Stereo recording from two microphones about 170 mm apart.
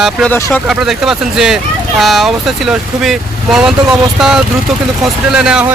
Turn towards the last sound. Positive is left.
turn(degrees=-5)  # may be behind; listen again after turning